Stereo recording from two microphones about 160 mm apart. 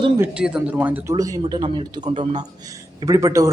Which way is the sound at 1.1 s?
20° right (ahead or behind).